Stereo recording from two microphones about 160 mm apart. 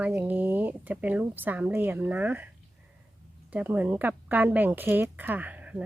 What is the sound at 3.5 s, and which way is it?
Speech, 10° right (ahead or behind).